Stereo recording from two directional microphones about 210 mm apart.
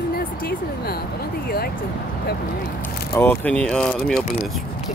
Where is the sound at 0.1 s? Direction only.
45° left (ahead or behind).